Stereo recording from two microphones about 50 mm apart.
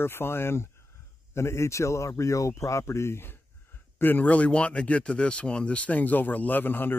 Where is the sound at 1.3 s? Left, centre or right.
Left.